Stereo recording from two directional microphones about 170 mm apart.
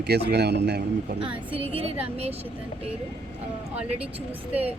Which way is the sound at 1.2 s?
30° right (ahead or behind).